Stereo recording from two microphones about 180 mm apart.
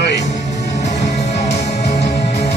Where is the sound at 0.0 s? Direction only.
70° left (ahead or behind).